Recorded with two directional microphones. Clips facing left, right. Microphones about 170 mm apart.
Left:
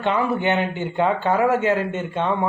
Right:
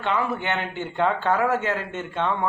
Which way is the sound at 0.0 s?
15° left (ahead or behind).